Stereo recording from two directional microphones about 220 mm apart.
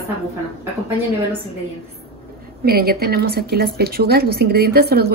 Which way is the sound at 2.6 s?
45° right (ahead or behind).